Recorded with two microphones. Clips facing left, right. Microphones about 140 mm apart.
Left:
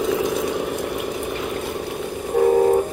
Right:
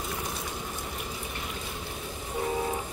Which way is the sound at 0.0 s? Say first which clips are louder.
Left 15 dB; 90° left.